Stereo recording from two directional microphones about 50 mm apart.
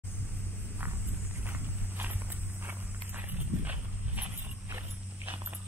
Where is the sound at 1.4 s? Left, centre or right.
Right.